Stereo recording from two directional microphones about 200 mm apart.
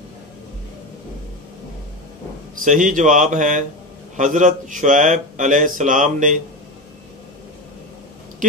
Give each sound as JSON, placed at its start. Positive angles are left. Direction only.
{"t": 2.6, "sound": "speech", "side_deg": -40}